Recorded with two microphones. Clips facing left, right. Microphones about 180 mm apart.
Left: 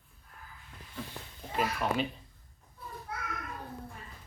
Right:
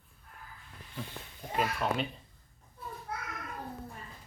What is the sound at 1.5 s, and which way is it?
Speech, 5° left (ahead or behind).